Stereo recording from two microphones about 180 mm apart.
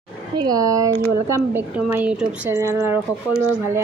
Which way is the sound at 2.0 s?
5° right (ahead or behind).